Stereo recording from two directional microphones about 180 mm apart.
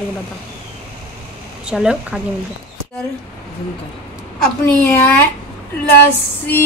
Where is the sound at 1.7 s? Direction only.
5° right (ahead or behind).